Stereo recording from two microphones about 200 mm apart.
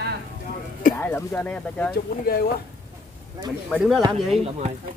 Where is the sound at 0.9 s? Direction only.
10° left (ahead or behind).